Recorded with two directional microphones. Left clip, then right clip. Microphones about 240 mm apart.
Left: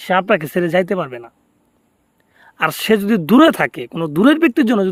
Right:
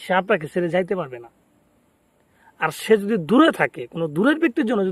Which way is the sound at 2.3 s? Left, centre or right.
Left.